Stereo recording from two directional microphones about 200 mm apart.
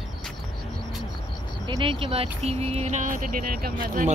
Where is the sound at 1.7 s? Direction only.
25° right (ahead or behind).